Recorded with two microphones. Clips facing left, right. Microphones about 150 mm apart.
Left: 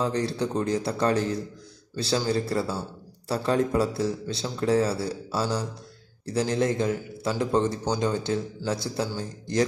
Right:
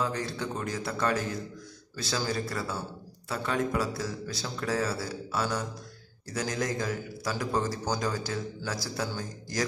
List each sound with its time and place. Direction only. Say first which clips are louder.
0.0 s a man's voice: left 5 dB; 30° left (ahead or behind)